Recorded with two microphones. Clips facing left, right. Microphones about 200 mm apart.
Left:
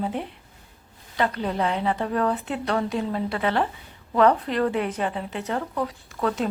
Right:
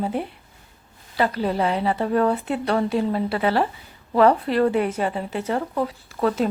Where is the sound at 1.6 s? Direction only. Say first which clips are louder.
Right 1 dB; 5° right (ahead or behind).